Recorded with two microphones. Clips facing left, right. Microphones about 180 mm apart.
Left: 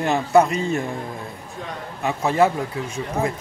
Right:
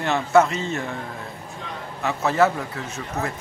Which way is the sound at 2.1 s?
15° left (ahead or behind).